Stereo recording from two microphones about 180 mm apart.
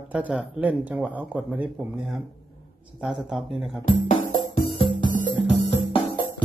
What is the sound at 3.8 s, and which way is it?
Speech, 45° left (ahead or behind).